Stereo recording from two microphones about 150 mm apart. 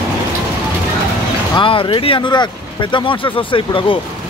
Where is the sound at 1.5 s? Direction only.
35° left (ahead or behind).